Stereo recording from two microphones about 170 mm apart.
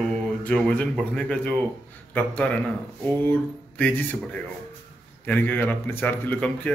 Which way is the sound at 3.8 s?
10° left (ahead or behind).